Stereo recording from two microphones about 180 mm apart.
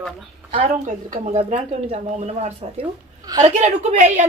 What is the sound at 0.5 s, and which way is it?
Speech, 35° right (ahead or behind).